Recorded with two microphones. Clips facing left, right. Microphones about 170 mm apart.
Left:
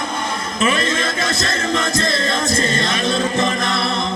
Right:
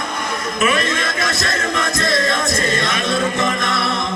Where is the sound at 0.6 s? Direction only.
30° left (ahead or behind).